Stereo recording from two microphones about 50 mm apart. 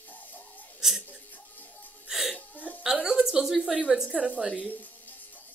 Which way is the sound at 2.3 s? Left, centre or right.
Left.